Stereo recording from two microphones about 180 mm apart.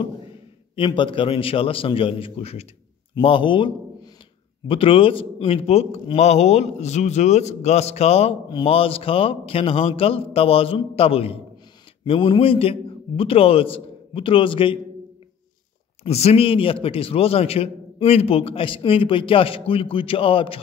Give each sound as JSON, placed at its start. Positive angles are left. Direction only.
{"t": 0.7, "sound": "a man's voice", "side_deg": 25}
{"t": 16.0, "sound": "a man's voice", "side_deg": 35}